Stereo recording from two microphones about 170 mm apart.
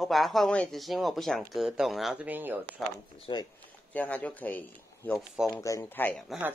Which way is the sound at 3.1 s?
30° left (ahead or behind).